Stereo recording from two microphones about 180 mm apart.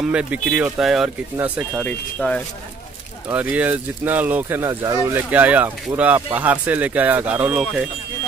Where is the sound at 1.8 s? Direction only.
5° left (ahead or behind).